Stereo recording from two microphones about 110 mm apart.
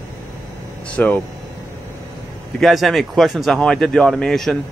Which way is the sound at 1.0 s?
15° left (ahead or behind).